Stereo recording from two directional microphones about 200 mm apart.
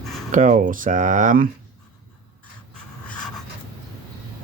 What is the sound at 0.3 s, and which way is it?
Speech, 40° right (ahead or behind).